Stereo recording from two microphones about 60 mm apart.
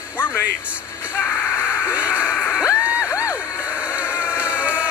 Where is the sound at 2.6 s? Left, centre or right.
Left.